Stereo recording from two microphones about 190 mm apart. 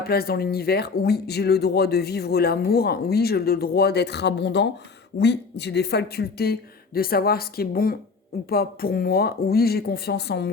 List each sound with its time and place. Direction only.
0.1 s a woman's voice: 55° left (ahead or behind)